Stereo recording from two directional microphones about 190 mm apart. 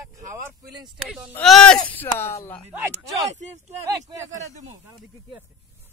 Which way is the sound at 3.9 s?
20° right (ahead or behind).